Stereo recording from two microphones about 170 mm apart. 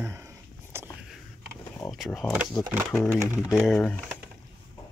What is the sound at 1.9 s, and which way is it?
Speech, centre (ahead or behind).